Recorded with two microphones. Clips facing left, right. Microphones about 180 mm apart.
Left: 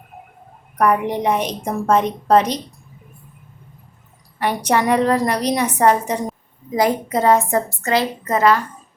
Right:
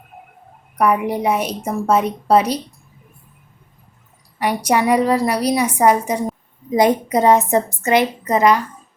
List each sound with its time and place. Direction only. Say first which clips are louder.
0.8 s a woman's voice: even; 10° right (ahead or behind)
4.4 s a woman's voice: right 1 dB; 10° right (ahead or behind)